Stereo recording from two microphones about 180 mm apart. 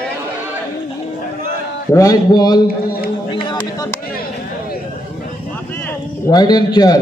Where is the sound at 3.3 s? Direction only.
30° left (ahead or behind).